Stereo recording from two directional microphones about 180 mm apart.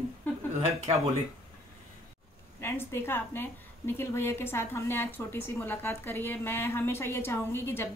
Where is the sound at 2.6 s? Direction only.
10° left (ahead or behind).